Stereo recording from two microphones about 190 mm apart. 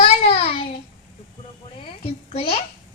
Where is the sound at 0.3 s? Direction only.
30° left (ahead or behind).